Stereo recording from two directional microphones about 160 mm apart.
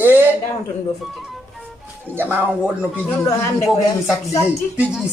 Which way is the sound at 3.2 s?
20° left (ahead or behind).